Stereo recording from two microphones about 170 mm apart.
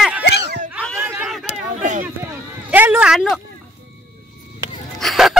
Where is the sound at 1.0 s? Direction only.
10° right (ahead or behind).